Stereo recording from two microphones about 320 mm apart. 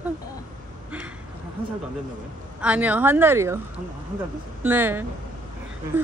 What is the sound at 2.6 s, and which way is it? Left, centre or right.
Speech, centre.